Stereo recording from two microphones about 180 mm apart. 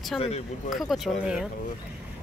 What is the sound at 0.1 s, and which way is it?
Speech, 5° left (ahead or behind).